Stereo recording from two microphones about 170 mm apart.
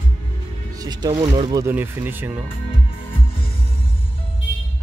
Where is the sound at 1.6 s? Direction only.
15° right (ahead or behind).